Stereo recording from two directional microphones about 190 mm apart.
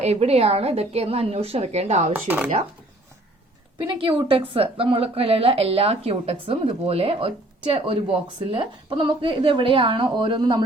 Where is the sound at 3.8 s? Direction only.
25° right (ahead or behind).